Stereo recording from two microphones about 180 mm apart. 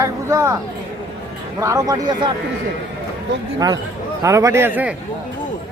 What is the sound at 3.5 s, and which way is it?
Speech, 20° right (ahead or behind).